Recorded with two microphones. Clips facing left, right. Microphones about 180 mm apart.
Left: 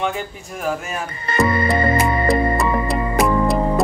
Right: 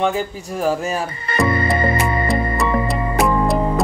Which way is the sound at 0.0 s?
35° right (ahead or behind).